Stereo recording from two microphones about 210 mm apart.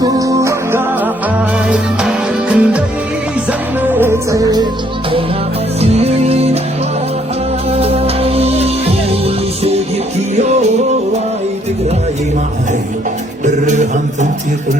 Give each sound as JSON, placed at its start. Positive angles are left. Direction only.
{"t": 0.2, "sound": "music", "side_deg": -15}
{"t": 5.8, "sound": "music", "side_deg": -30}
{"t": 7.7, "sound": "music", "side_deg": -30}
{"t": 13.4, "sound": "music", "side_deg": -35}